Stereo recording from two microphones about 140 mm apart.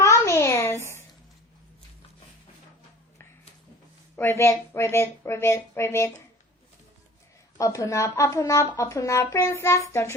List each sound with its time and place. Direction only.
0.0 s a sound: 20° left (ahead or behind)
4.2 s speech: 15° left (ahead or behind)
7.6 s speech: 25° left (ahead or behind)